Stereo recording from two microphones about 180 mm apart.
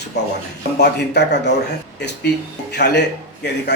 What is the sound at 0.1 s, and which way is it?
Speech, 70° left (ahead or behind).